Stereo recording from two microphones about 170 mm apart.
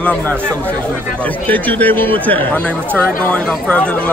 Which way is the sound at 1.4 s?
10° left (ahead or behind).